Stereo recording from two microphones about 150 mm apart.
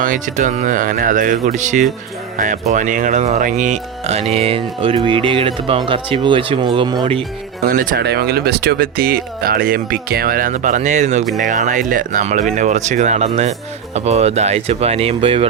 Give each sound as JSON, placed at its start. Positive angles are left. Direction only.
{"t": 0.0, "sound": "speech", "side_deg": -60}
{"t": 7.6, "sound": "speech", "side_deg": -70}